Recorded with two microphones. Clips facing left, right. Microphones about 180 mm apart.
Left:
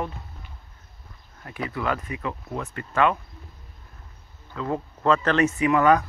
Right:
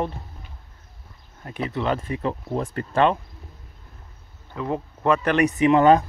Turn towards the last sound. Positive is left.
turn(degrees=-25)  # may be behind; listen again after turning